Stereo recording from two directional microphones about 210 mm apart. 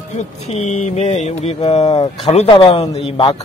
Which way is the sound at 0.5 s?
30° left (ahead or behind).